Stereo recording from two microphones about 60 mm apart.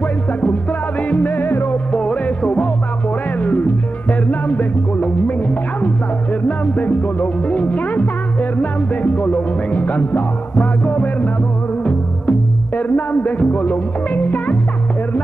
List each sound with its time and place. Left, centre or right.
1.1 s music: left
1.9 s music: centre